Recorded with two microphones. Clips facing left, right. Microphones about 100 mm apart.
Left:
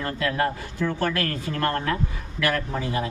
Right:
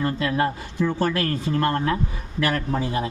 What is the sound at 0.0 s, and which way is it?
Speech, 20° right (ahead or behind).